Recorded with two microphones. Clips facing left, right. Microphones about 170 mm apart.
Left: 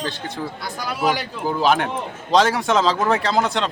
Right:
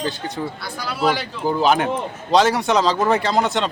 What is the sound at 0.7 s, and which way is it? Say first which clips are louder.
Speech: right 1 dB; 15° left (ahead or behind).